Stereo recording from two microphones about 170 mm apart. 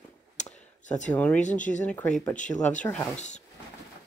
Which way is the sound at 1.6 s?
45° left (ahead or behind).